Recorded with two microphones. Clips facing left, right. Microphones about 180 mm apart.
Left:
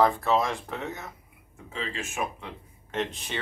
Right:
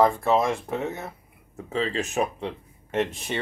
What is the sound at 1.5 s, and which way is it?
Speech, 40° right (ahead or behind).